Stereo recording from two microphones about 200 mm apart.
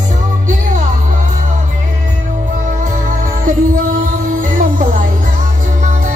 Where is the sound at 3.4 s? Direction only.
40° right (ahead or behind).